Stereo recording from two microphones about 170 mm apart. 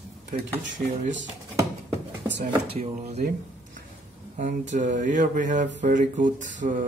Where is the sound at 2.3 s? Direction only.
90° right.